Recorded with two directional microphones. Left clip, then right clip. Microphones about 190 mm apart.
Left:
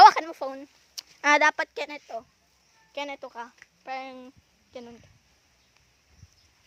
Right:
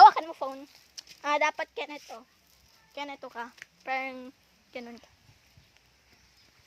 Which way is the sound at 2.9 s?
50° left (ahead or behind).